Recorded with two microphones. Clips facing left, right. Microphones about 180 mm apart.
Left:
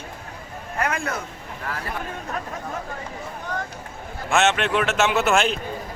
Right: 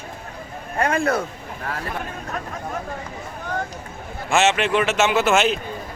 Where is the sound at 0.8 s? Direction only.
30° right (ahead or behind).